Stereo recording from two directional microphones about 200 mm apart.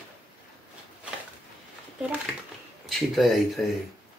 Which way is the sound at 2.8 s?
Centre (ahead or behind).